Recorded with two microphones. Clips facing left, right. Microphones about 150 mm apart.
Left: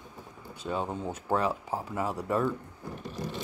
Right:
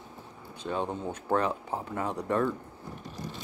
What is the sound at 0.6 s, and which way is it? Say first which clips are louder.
Speech: even; 5° left (ahead or behind).